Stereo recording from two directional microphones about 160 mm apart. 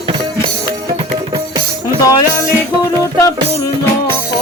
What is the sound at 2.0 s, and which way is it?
Music, 20° left (ahead or behind).